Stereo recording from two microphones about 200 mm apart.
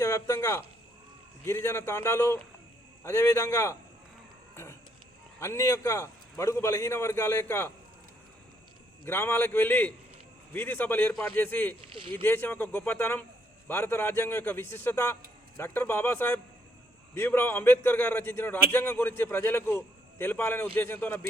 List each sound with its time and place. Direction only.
0.0 s a man's voice: 15° left (ahead or behind)
4.5 s a sound: 15° left (ahead or behind)
5.4 s a man's voice: 15° left (ahead or behind)
9.0 s a man's voice: 10° left (ahead or behind)